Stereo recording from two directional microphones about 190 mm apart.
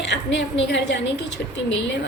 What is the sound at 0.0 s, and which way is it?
A woman's voice, 65° left (ahead or behind).